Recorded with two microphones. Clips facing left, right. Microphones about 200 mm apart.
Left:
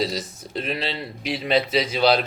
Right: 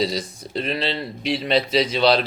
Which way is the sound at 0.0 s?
5° left (ahead or behind).